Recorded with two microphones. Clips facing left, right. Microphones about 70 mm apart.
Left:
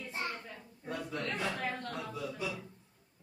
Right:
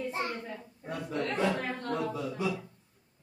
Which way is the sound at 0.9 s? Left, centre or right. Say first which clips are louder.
Right 4 dB; right.